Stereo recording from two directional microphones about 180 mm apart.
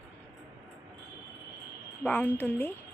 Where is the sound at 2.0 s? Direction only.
10° left (ahead or behind).